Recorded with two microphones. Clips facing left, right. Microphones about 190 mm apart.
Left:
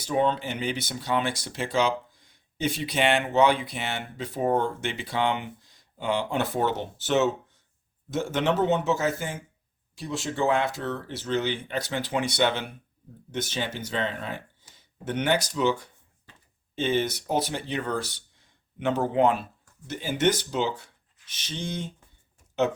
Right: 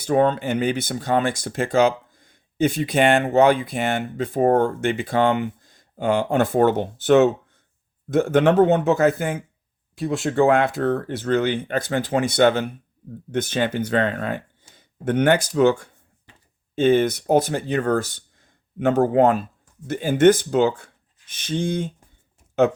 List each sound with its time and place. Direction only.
0.0 s speech: 50° right (ahead or behind)